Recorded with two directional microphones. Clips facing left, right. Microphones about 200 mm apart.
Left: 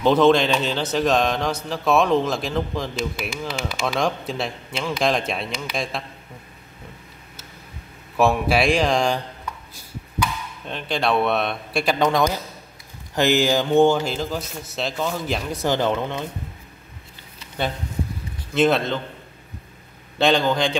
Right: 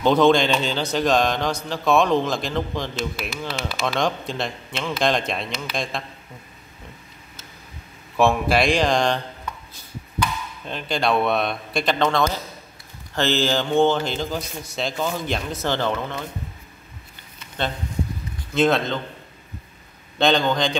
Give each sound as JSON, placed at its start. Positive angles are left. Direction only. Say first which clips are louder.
{"t": 0.0, "sound": "a man's voice", "louder": "left 1 dB", "side_deg": 5}
{"t": 3.9, "sound": "a man's voice", "louder": "left 1 dB", "side_deg": 5}
{"t": 8.2, "sound": "a man's voice", "louder": "even", "side_deg": 5}
{"t": 15.5, "sound": "speech", "louder": "left 4 dB", "side_deg": 15}
{"t": 18.5, "sound": "a man's voice", "louder": "left 1 dB", "side_deg": 5}
{"t": 20.2, "sound": "a man's voice", "louder": "left 1 dB", "side_deg": 5}